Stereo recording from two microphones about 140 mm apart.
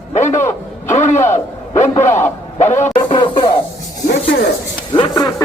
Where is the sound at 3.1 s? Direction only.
30° left (ahead or behind).